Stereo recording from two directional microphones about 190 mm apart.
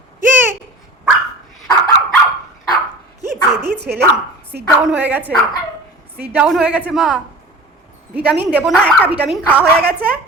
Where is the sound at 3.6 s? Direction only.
60° right (ahead or behind).